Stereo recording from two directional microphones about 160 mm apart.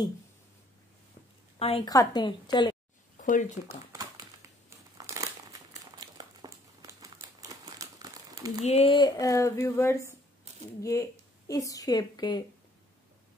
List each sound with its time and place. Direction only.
1.6 s a woman's voice: 35° left (ahead or behind)
1.9 s a woman's voice: 25° left (ahead or behind)
3.2 s speech: 55° left (ahead or behind)
3.6 s speech: 20° right (ahead or behind)
4.6 s crumpling: 20° right (ahead or behind)
8.6 s a woman's voice: 35° left (ahead or behind)